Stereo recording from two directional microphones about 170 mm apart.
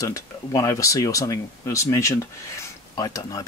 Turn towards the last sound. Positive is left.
turn(degrees=20)  # may be behind; listen again after turning